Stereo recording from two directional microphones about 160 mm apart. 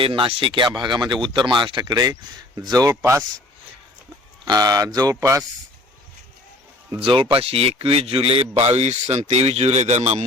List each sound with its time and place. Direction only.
0.0 s speech: 35° right (ahead or behind); by 3.2 s 15° right (ahead or behind)
4.4 s speech: 25° right (ahead or behind)
7.0 s a man's voice: 30° right (ahead or behind)